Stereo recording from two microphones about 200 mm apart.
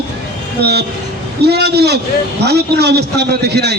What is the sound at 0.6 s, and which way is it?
A man's voice, 55° right (ahead or behind).